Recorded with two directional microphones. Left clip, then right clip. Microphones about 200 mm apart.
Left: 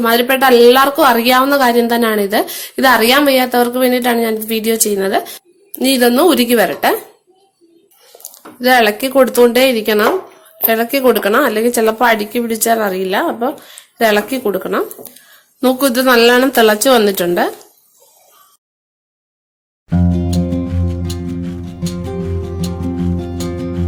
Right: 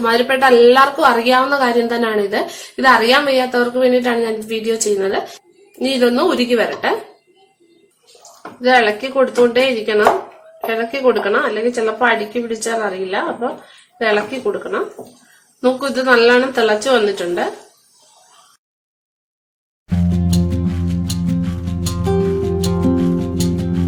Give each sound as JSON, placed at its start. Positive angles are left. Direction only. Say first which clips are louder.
{"t": 0.0, "sound": "a woman's voice", "louder": "left 2 dB", "side_deg": 45}
{"t": 8.6, "sound": "speech", "louder": "left 2 dB", "side_deg": 55}
{"t": 19.9, "sound": "music", "louder": "left 3 dB", "side_deg": 0}